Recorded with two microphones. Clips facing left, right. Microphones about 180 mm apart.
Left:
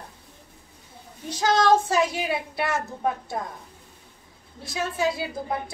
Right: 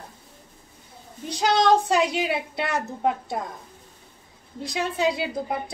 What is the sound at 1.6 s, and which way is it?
Speech, 20° right (ahead or behind).